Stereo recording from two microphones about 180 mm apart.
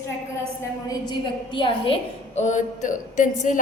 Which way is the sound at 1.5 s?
30° left (ahead or behind).